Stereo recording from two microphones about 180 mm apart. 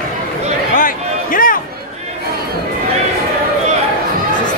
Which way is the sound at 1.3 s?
50° left (ahead or behind).